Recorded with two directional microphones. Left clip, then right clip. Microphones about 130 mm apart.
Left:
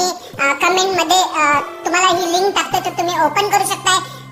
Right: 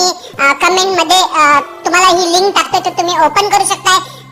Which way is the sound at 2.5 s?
25° right (ahead or behind).